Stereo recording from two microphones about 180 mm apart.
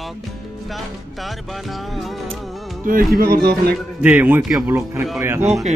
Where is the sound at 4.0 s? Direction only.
10° right (ahead or behind).